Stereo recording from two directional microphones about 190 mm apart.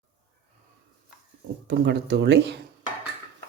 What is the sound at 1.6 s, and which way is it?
Speech, 60° right (ahead or behind).